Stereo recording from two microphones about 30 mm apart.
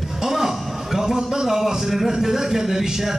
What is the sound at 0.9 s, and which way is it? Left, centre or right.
A man's voice, centre.